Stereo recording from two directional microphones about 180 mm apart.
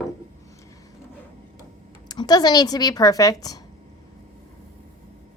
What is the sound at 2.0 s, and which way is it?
A woman's voice, 20° left (ahead or behind).